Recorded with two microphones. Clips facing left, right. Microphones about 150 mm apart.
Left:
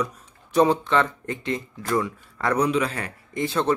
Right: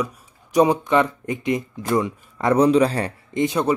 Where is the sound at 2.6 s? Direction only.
35° right (ahead or behind).